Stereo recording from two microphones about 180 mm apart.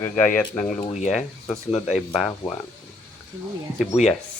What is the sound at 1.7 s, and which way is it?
Speech, 35° left (ahead or behind).